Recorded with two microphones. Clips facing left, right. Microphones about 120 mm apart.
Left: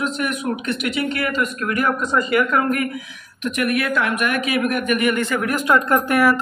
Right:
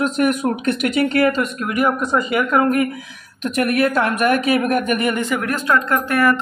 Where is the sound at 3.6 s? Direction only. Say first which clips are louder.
Right 4 dB; 35° right (ahead or behind).